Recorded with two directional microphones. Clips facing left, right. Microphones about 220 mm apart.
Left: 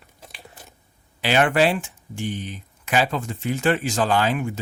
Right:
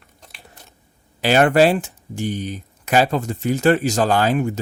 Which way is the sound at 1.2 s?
40° right (ahead or behind).